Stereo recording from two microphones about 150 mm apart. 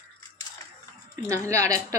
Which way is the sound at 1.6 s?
20° right (ahead or behind).